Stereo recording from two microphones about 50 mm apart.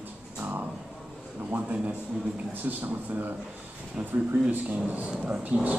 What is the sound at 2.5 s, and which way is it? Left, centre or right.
Speech, right.